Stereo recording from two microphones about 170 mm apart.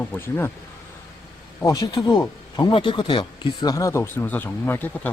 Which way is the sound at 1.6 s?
20° left (ahead or behind).